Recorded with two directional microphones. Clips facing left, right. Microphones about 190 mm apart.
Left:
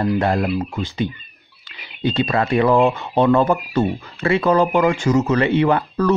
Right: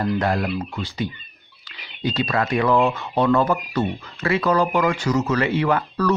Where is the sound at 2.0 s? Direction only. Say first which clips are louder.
Left 3 dB; 25° left (ahead or behind).